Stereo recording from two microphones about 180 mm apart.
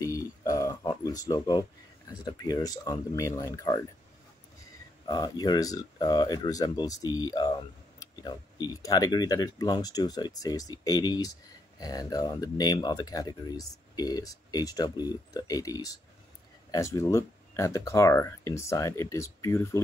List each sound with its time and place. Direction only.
0.0 s a sound: 20° left (ahead or behind)
2.2 s speech: 20° left (ahead or behind)
5.0 s speech: 25° left (ahead or behind)